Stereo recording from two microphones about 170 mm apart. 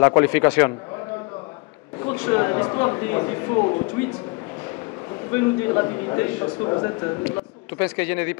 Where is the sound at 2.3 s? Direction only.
25° left (ahead or behind).